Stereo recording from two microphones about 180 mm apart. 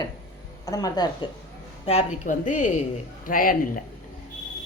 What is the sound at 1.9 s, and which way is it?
A woman's voice, 40° left (ahead or behind).